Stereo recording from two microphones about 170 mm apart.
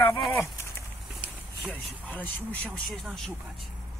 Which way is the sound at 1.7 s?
10° left (ahead or behind).